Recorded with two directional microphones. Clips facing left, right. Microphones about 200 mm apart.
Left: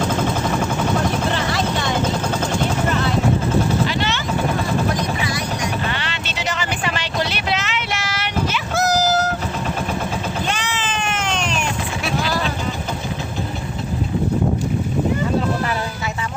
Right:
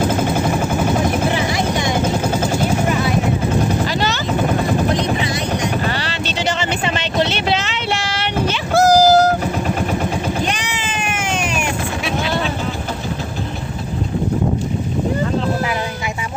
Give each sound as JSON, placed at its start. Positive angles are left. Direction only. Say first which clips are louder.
{"t": 1.3, "sound": "helicopter", "louder": "right 3 dB", "side_deg": -15}
{"t": 3.8, "sound": "vehicle", "louder": "right 2 dB", "side_deg": -40}
{"t": 4.9, "sound": "helicopter", "louder": "right 3 dB", "side_deg": -25}
{"t": 5.8, "sound": "vehicle", "louder": "right 4 dB", "side_deg": -35}
{"t": 10.4, "sound": "a sound", "louder": "right 2 dB", "side_deg": -15}